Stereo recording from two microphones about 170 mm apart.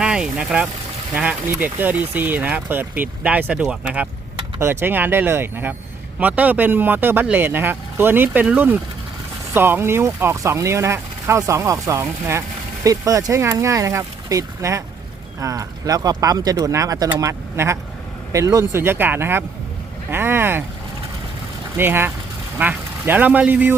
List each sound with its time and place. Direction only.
0.0 s vehicle: 5° right (ahead or behind)
1.1 s speech: 10° right (ahead or behind)
21.8 s speech: 15° right (ahead or behind)